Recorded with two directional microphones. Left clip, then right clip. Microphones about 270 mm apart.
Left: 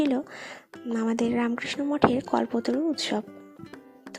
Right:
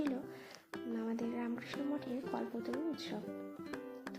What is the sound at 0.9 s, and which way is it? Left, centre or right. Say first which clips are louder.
Speech: left 15 dB; left.